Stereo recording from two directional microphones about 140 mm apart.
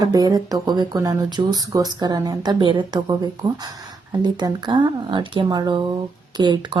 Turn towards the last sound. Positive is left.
turn(degrees=-35)  # may be behind; listen again after turning